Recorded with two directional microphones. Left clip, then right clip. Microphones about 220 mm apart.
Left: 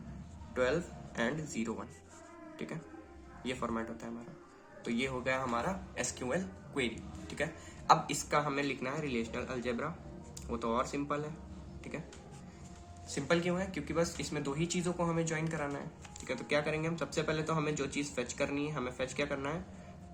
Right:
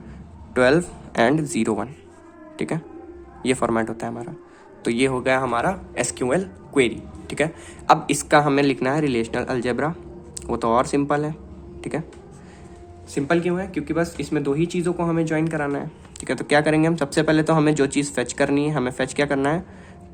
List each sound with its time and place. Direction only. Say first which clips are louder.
0.5 s speech: right 15 dB; 50° right (ahead or behind)
3.4 s speech: right 16 dB; 50° right (ahead or behind)
13.1 s speech: right 11 dB; 30° right (ahead or behind); by 19.6 s 50° right (ahead or behind)